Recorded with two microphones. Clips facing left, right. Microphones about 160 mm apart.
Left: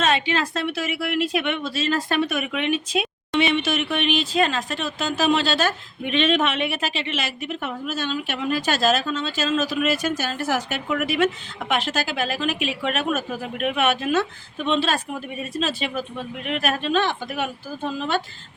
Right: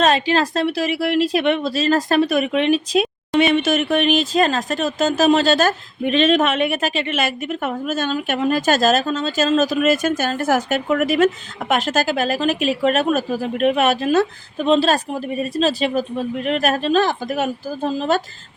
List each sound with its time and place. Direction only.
0.0 s a woman's voice: 35° right (ahead or behind)